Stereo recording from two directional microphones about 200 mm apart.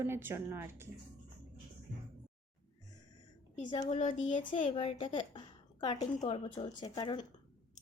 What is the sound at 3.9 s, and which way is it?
Speech, 40° left (ahead or behind).